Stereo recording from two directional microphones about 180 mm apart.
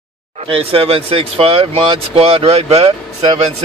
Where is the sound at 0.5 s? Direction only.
30° right (ahead or behind).